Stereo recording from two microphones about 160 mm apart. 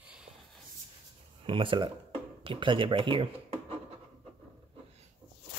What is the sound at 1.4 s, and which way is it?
Speech, 35° right (ahead or behind).